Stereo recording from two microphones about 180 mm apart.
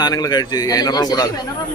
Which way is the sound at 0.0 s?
20° left (ahead or behind).